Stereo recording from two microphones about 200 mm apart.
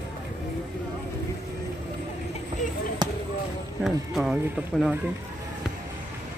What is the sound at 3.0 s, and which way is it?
Basketball bounce, 20° right (ahead or behind).